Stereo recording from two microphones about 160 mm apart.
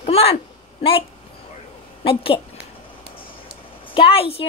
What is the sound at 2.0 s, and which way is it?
Speech, 35° left (ahead or behind).